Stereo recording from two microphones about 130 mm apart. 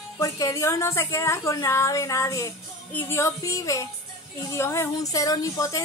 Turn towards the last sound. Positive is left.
turn(degrees=25)  # may be behind; listen again after turning